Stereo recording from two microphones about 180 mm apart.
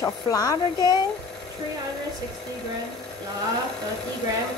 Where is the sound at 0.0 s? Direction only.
20° left (ahead or behind).